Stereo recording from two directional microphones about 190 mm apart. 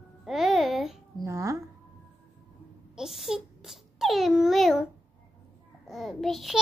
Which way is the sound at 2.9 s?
Centre (ahead or behind).